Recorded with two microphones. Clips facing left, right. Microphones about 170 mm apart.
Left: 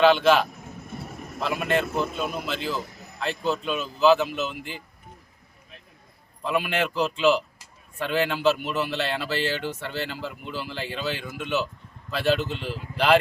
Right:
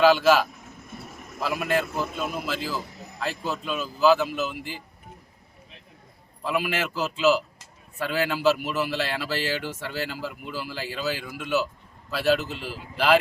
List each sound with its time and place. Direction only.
0.0 s a man's voice: 5° right (ahead or behind)
6.4 s a man's voice: 5° right (ahead or behind)